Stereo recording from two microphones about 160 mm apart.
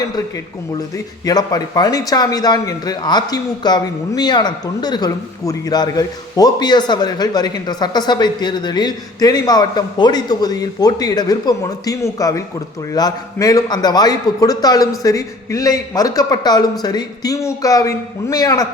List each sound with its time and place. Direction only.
1.2 s a man's voice: 25° left (ahead or behind)